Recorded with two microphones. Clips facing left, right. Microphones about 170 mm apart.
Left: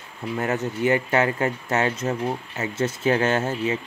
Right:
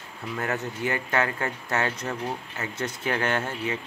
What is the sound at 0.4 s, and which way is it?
Speech, 20° left (ahead or behind).